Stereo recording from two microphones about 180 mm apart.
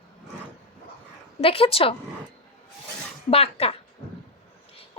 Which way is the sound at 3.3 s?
35° left (ahead or behind).